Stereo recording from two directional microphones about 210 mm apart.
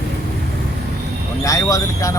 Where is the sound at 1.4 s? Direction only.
15° left (ahead or behind).